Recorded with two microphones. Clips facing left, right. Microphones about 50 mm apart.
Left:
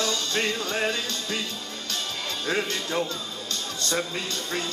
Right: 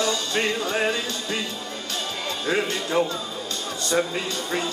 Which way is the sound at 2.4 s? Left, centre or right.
Centre.